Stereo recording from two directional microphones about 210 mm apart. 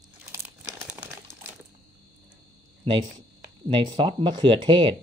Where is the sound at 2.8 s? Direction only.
25° right (ahead or behind).